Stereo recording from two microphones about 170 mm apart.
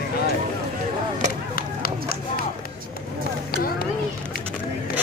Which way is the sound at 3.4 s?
60° left (ahead or behind).